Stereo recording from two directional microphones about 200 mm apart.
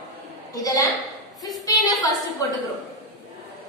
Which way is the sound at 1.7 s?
15° left (ahead or behind).